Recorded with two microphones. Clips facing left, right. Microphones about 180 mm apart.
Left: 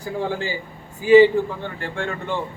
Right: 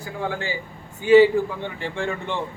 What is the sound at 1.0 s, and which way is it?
Speech, centre (ahead or behind).